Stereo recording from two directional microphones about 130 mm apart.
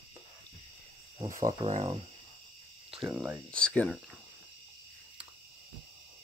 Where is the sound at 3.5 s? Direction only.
10° left (ahead or behind).